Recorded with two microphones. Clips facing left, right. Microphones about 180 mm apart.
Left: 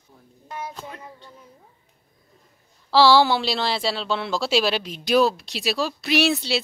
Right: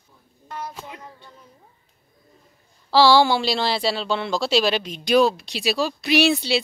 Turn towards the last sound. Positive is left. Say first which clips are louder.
# right 2 dB
turn(degrees=0)  # may be behind; listen again after turning